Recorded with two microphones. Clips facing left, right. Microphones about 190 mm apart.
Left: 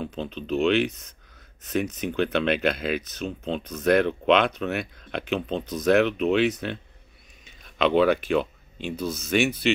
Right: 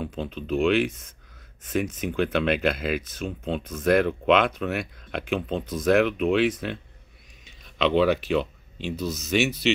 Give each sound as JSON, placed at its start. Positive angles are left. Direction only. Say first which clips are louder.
{"t": 0.0, "sound": "speech", "louder": "even", "side_deg": -5}
{"t": 2.0, "sound": "speech", "louder": "even", "side_deg": -5}
{"t": 7.4, "sound": "a sound", "louder": "left 1 dB", "side_deg": 50}
{"t": 8.7, "sound": "speech", "louder": "even", "side_deg": 45}